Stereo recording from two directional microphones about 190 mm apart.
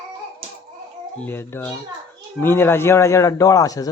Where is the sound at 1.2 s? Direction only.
10° left (ahead or behind).